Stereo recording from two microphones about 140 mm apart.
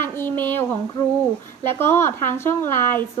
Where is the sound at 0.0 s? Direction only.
15° left (ahead or behind).